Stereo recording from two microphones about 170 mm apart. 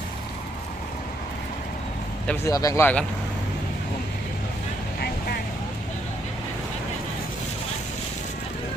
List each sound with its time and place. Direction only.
2.2 s speech: 10° left (ahead or behind)